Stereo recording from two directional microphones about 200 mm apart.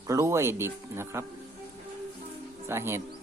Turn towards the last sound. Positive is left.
turn(degrees=-15)  # may be behind; listen again after turning